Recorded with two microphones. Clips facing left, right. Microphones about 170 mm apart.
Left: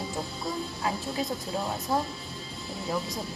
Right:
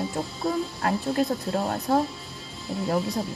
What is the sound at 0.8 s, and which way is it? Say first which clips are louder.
Speech: right 6 dB; 60° right (ahead or behind).